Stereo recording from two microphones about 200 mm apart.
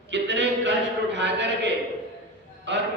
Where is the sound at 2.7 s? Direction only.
60° right (ahead or behind).